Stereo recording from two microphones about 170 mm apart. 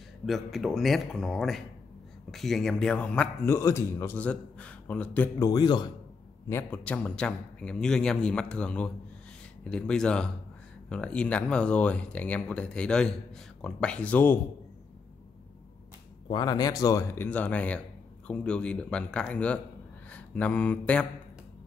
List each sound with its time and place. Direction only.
0.3 s speech: centre (ahead or behind)
5.4 s a man's voice: 25° left (ahead or behind)
6.5 s speech: 10° left (ahead or behind)
16.3 s speech: 25° left (ahead or behind); by 21.1 s 5° left (ahead or behind)